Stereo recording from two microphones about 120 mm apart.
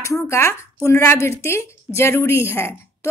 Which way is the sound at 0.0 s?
25° left (ahead or behind).